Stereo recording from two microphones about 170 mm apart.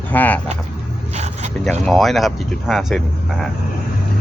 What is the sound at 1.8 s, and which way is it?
Speech, centre (ahead or behind).